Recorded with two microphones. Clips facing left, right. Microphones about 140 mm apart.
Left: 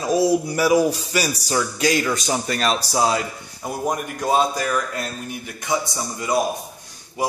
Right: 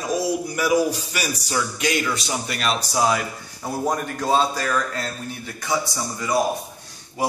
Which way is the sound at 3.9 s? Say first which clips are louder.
Even; 15° left (ahead or behind).